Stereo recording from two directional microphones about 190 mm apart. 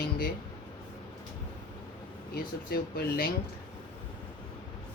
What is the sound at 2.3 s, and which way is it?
Speech, 55° left (ahead or behind).